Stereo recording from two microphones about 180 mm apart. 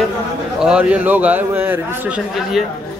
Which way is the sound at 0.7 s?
5° right (ahead or behind).